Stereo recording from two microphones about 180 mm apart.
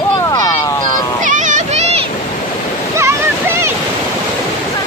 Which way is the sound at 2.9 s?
15° right (ahead or behind).